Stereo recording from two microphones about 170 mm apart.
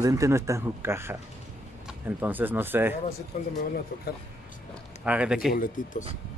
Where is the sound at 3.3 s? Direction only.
45° left (ahead or behind).